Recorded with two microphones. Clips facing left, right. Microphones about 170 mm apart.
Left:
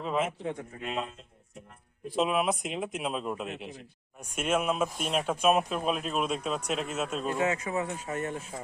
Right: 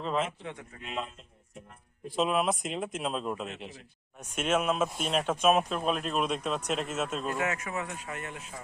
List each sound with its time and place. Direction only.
0.0 s speech: 5° left (ahead or behind)
0.3 s speech: 40° left (ahead or behind)
2.1 s speech: centre (ahead or behind)
7.3 s speech: 20° left (ahead or behind)